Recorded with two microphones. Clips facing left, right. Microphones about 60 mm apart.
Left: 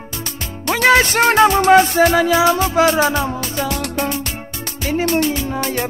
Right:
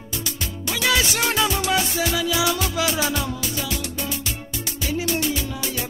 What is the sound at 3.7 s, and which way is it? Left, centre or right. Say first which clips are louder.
Music: left 8 dB; left.